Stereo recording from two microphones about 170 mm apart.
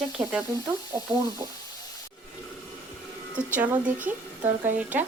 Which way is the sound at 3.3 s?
10° right (ahead or behind).